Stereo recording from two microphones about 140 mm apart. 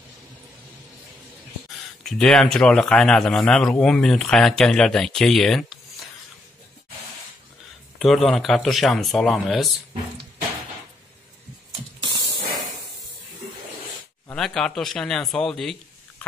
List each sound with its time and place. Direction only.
2.0 s a man's voice: 5° left (ahead or behind)
8.0 s a man's voice: centre (ahead or behind)
12.0 s spray: 30° right (ahead or behind)
14.3 s a man's voice: 5° left (ahead or behind)